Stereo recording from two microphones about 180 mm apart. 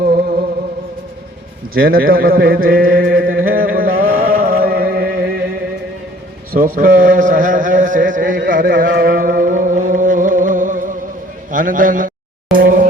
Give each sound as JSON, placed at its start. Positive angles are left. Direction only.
{"t": 0.0, "sound": "music", "side_deg": -55}
{"t": 1.7, "sound": "a man's voice", "side_deg": -55}
{"t": 3.2, "sound": "music", "side_deg": -55}
{"t": 6.7, "sound": "a sound", "side_deg": -50}
{"t": 8.4, "sound": "music", "side_deg": -50}
{"t": 11.5, "sound": "a sound", "side_deg": -50}